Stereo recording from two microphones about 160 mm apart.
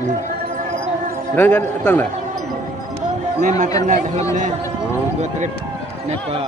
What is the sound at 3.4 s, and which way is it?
Speech, 50° right (ahead or behind).